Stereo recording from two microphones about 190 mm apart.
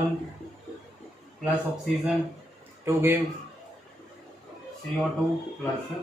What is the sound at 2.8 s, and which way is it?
Speech, 10° right (ahead or behind).